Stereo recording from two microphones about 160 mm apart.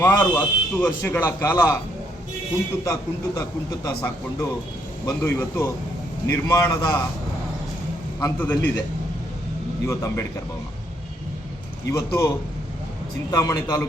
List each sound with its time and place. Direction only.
0.0 s speech: 15° left (ahead or behind)
2.8 s speech: 20° left (ahead or behind)
8.4 s speech: 10° left (ahead or behind)
9.8 s speech: 15° left (ahead or behind)
11.9 s speech: 20° left (ahead or behind)
13.3 s speech: 20° left (ahead or behind)